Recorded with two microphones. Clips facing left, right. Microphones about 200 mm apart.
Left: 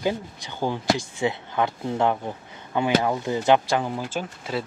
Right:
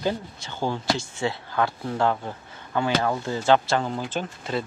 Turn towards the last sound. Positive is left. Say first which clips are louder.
# even
turn(degrees=5)  # may be behind; listen again after turning